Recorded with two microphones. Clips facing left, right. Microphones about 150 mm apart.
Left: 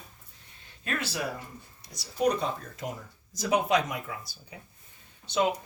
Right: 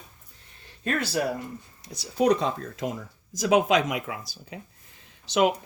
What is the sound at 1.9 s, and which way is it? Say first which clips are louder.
Speech: right 5 dB; 90° right.